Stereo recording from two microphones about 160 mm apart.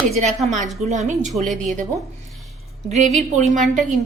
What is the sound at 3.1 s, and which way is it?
Speech, 50° right (ahead or behind).